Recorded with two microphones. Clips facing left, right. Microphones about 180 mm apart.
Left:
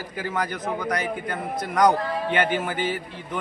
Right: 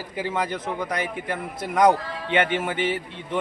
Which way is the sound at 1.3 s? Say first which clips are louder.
Even; 25° right (ahead or behind).